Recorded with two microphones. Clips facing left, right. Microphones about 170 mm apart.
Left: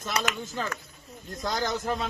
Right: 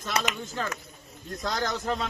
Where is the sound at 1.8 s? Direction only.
5° left (ahead or behind).